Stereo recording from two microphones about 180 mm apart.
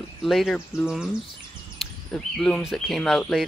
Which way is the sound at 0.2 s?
Centre (ahead or behind).